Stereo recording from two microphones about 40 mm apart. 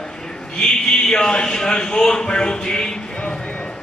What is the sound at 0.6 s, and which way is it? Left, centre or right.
A man's voice, centre.